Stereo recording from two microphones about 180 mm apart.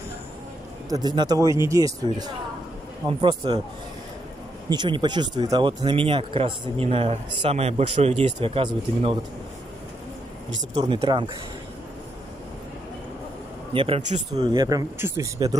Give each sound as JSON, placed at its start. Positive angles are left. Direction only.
{"t": 0.8, "sound": "speech", "side_deg": -20}
{"t": 4.6, "sound": "speech", "side_deg": -25}
{"t": 10.8, "sound": "speech", "side_deg": -25}
{"t": 13.7, "sound": "a man's voice", "side_deg": -30}
{"t": 14.5, "sound": "speech", "side_deg": -25}